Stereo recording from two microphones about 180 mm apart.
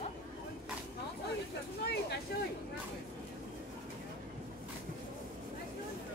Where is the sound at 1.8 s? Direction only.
65° left (ahead or behind).